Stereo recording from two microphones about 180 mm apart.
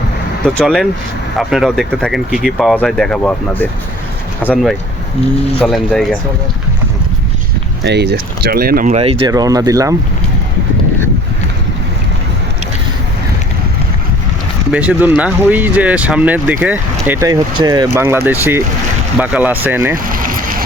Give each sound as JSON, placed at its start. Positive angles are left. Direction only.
{"t": 0.4, "sound": "speech", "side_deg": 5}
{"t": 7.9, "sound": "speech", "side_deg": -65}
{"t": 9.0, "sound": "speech", "side_deg": -30}
{"t": 9.3, "sound": "speech", "side_deg": -20}
{"t": 14.7, "sound": "speech", "side_deg": -10}
{"t": 20.1, "sound": "vehicle", "side_deg": -50}